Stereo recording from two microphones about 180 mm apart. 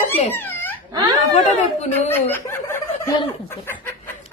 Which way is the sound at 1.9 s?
10° left (ahead or behind).